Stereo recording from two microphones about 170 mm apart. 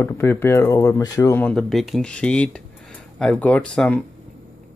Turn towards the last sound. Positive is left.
turn(degrees=5)  # may be behind; listen again after turning